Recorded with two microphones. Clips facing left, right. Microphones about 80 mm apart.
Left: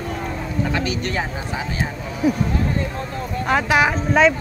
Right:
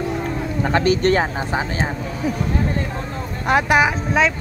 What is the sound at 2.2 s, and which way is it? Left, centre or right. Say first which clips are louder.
Speech: left 5 dB; centre.